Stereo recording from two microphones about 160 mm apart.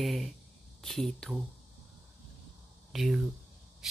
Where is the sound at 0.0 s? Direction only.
Centre (ahead or behind).